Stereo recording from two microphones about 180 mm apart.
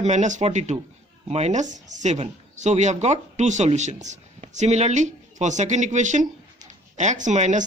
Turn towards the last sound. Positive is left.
turn(degrees=-40)  # may be behind; listen again after turning